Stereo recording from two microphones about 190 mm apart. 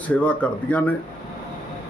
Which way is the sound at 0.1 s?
10° left (ahead or behind).